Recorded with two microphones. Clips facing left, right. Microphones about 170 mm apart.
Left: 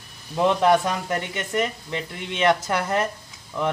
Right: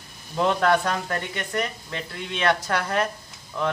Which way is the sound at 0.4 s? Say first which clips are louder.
Left 2 dB; 15° left (ahead or behind).